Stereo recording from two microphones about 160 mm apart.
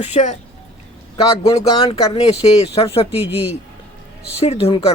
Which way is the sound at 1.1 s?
35° left (ahead or behind).